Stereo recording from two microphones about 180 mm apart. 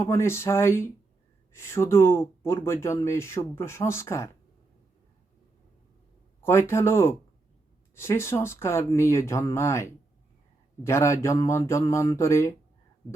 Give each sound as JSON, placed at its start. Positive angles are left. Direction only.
{"t": 0.0, "sound": "speech", "side_deg": 15}
{"t": 6.4, "sound": "speech", "side_deg": 15}